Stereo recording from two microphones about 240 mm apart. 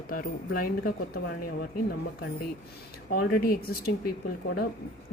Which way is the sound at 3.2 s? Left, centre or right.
Left.